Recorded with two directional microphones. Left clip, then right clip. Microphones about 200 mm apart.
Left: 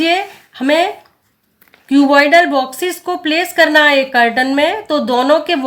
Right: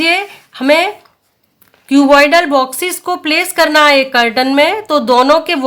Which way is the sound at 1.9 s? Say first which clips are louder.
Right 2 dB; 40° right (ahead or behind).